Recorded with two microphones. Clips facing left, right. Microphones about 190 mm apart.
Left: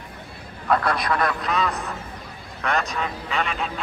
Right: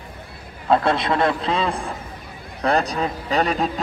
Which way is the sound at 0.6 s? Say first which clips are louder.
Right 4 dB; 25° right (ahead or behind).